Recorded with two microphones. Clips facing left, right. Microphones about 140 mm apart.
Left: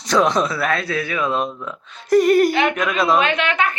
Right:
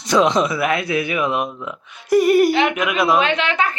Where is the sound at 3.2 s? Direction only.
25° right (ahead or behind).